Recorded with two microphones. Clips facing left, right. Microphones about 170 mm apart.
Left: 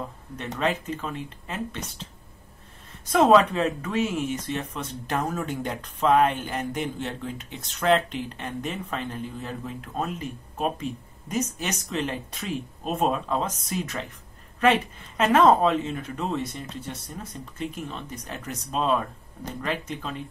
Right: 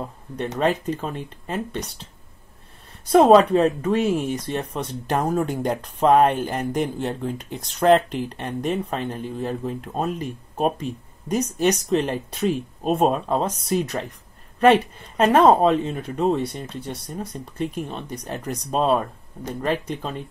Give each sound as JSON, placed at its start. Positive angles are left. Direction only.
{"t": 0.6, "sound": "speech", "side_deg": -40}
{"t": 3.1, "sound": "speech", "side_deg": -35}